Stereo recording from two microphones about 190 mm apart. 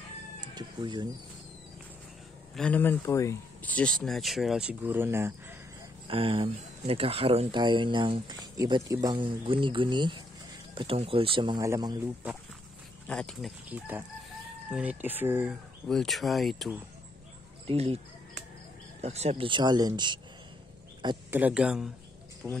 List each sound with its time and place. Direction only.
0.6 s cat: 25° right (ahead or behind)
2.5 s speech: 5° left (ahead or behind); by 5.6 s 10° right (ahead or behind)
6.0 s speech: 30° right (ahead or behind)
13.1 s speech: 5° left (ahead or behind)
13.7 s speech: 10° right (ahead or behind)
15.9 s speech: centre (ahead or behind)
17.6 s speech: 30° right (ahead or behind)
21.3 s speech: 10° right (ahead or behind)